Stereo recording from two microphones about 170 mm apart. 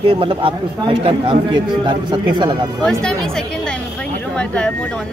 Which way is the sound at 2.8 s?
5° left (ahead or behind).